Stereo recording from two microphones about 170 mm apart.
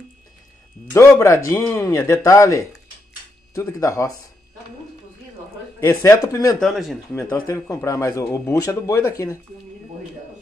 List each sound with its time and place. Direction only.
0.9 s speech: 15° left (ahead or behind)
5.8 s speech: 15° left (ahead or behind)
6.6 s speech: centre (ahead or behind)
7.3 s speech: 15° left (ahead or behind)